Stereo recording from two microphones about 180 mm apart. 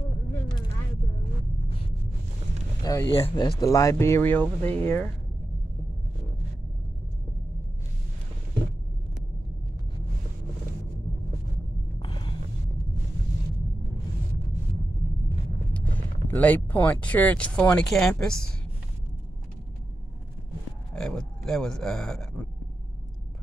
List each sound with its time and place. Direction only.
2.8 s speech: 20° left (ahead or behind)
3.1 s speech: 30° left (ahead or behind)
3.6 s speech: 20° left (ahead or behind)
12.0 s a sound: 25° left (ahead or behind)
15.7 s speech: 10° left (ahead or behind)
20.9 s speech: 5° left (ahead or behind)